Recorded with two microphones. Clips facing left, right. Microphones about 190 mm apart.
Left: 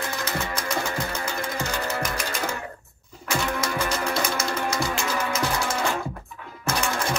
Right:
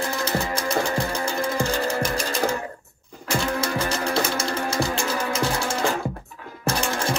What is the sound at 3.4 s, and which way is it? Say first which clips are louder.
Music: right 2 dB; 30° right (ahead or behind).